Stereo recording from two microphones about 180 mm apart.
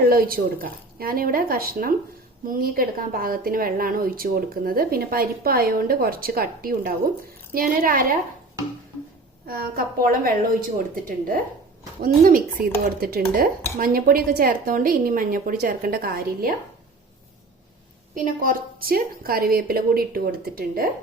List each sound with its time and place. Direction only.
0.1 s a woman's voice: 55° right (ahead or behind)
9.5 s speech: 55° right (ahead or behind)
12.0 s speech: 50° right (ahead or behind)
18.1 s a woman's voice: 50° right (ahead or behind)